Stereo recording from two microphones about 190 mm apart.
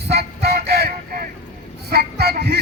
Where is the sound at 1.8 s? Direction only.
55° right (ahead or behind).